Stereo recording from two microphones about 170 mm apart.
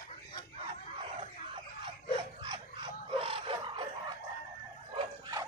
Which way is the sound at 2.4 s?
30° right (ahead or behind).